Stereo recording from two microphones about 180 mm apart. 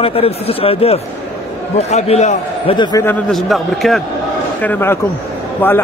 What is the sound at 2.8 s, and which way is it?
Speech, 25° left (ahead or behind).